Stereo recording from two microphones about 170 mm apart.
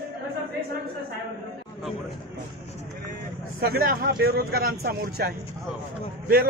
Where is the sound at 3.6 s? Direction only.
65° right (ahead or behind).